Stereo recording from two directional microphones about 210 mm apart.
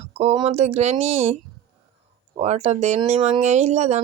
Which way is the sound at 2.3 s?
30° right (ahead or behind).